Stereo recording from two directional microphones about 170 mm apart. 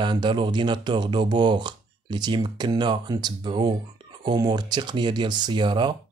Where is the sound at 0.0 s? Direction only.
25° right (ahead or behind).